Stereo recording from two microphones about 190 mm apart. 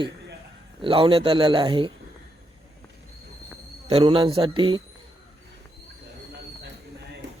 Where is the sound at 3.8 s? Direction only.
30° right (ahead or behind).